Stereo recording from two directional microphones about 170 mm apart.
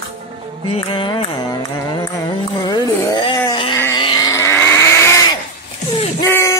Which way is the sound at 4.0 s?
25° left (ahead or behind).